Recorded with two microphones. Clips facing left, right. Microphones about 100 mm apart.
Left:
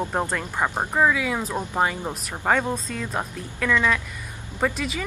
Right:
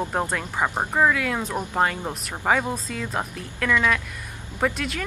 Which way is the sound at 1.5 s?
15° right (ahead or behind).